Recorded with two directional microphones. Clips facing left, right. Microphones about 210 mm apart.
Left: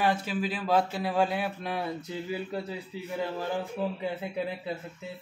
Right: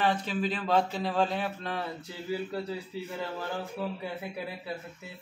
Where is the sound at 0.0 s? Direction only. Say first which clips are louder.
Left 1 dB; 10° left (ahead or behind).